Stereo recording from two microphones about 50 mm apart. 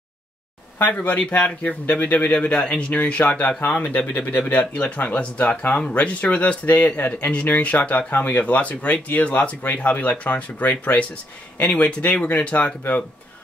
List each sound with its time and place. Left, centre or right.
0.7 s speech: left
8.1 s speech: left